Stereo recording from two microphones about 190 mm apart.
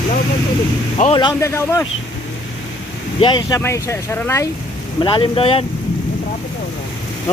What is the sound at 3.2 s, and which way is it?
Speech, 25° left (ahead or behind).